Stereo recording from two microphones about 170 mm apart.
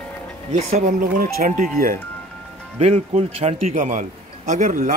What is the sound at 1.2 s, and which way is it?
Speech, 55° right (ahead or behind).